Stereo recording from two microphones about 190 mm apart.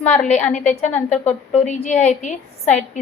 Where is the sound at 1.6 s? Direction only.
40° left (ahead or behind).